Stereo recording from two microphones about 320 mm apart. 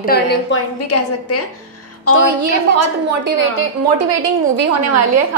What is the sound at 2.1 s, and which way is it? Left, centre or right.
A woman's voice, right.